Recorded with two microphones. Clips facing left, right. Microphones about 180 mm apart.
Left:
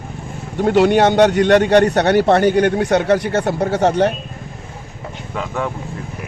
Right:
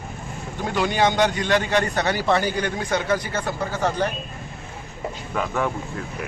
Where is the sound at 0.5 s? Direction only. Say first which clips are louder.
Left 10 dB; 65° left (ahead or behind).